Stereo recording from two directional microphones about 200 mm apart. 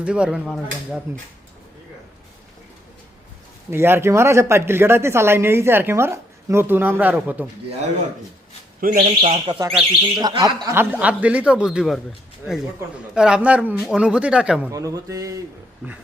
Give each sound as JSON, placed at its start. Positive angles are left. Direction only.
{"t": 0.0, "sound": "a man's voice", "side_deg": -5}
{"t": 3.7, "sound": "speech", "side_deg": -10}
{"t": 8.8, "sound": "speech", "side_deg": -45}
{"t": 9.3, "sound": "speech", "side_deg": -20}
{"t": 13.1, "sound": "a man's voice", "side_deg": -5}
{"t": 14.7, "sound": "speech", "side_deg": -15}